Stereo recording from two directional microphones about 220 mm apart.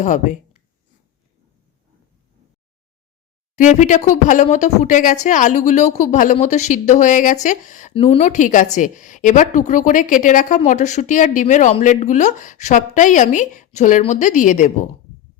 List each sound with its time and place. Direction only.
0.0 s a woman's voice: 35° left (ahead or behind)
3.5 s a woman's voice: 35° left (ahead or behind)